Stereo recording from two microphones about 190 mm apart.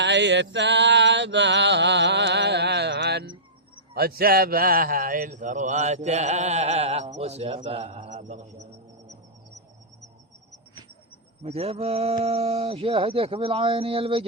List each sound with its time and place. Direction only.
0.0 s mantra: 70° right (ahead or behind)
3.9 s a man's voice: 55° right (ahead or behind); by 8.6 s 35° right (ahead or behind)
11.4 s a man's voice: 30° right (ahead or behind)